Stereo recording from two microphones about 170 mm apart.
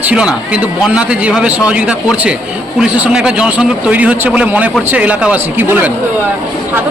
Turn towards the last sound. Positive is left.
turn(degrees=-10)  # may be behind; listen again after turning